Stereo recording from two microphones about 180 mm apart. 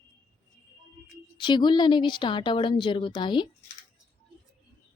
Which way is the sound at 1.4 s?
25° left (ahead or behind).